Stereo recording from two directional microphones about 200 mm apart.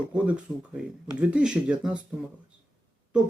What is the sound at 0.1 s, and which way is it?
Speech, 5° right (ahead or behind).